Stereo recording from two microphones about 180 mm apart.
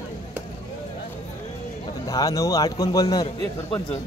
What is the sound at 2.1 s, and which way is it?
Speech, 20° left (ahead or behind).